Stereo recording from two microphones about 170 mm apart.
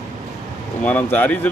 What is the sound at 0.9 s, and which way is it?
Speech, 10° left (ahead or behind).